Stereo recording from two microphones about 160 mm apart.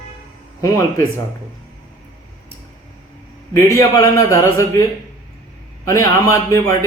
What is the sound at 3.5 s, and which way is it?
A man's voice, 20° left (ahead or behind).